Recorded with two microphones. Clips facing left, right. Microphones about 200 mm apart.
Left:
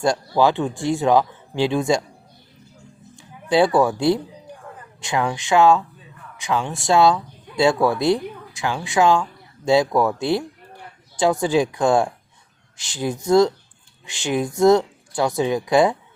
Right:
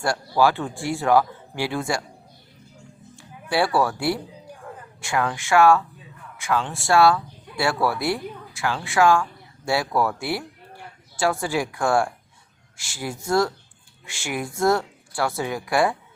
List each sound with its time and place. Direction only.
0.0 s speech: 20° left (ahead or behind)
3.2 s speech: 20° left (ahead or behind)